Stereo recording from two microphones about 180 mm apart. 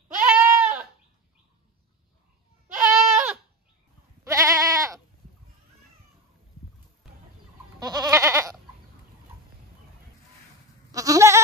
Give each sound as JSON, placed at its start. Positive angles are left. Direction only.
{"t": 0.2, "sound": "goat", "side_deg": -10}
{"t": 2.8, "sound": "goat", "side_deg": -10}
{"t": 8.1, "sound": "goat", "side_deg": -15}
{"t": 10.9, "sound": "goat", "side_deg": -20}